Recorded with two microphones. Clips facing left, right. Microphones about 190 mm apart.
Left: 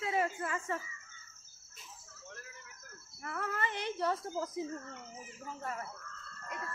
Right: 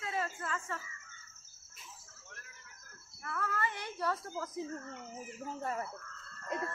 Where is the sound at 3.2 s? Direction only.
20° left (ahead or behind).